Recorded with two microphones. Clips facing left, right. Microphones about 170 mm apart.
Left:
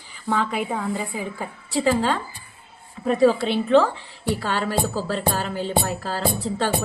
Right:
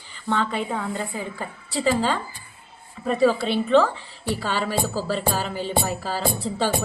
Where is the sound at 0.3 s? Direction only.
5° left (ahead or behind).